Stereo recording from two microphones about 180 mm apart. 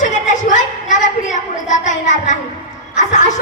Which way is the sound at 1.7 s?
45° left (ahead or behind).